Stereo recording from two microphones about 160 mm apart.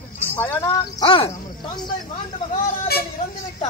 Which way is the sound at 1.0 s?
35° left (ahead or behind).